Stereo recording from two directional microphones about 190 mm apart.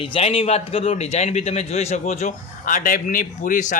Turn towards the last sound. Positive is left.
turn(degrees=40)  # may be behind; listen again after turning